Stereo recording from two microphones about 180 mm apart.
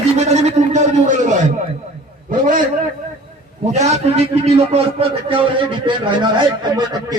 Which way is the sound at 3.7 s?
40° right (ahead or behind).